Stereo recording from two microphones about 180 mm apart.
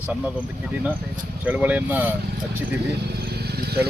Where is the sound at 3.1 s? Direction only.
65° right (ahead or behind).